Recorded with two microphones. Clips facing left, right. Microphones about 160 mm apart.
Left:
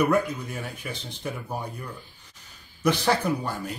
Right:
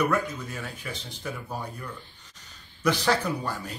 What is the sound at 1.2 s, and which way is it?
Speech, 15° left (ahead or behind).